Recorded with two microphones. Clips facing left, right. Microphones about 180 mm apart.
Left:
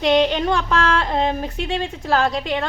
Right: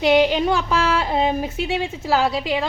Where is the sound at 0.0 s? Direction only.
5° right (ahead or behind).